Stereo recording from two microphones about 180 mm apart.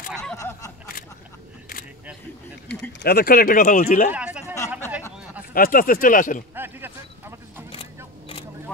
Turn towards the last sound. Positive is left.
turn(degrees=-15)  # may be behind; listen again after turning